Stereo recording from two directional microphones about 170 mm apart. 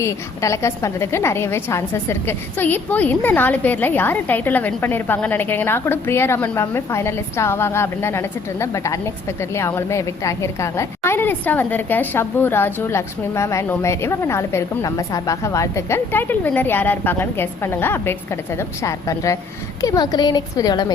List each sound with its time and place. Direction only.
0.0 s a woman's voice: 15° left (ahead or behind)